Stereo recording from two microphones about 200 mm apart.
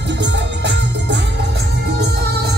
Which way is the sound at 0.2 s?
60° right (ahead or behind).